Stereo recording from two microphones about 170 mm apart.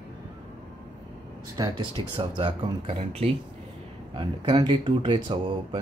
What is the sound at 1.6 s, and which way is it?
Speech, 25° right (ahead or behind).